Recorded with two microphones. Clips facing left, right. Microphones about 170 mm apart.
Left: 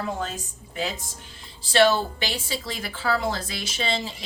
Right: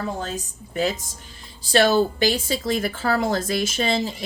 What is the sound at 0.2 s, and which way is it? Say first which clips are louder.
Speech: right 2 dB; 40° right (ahead or behind).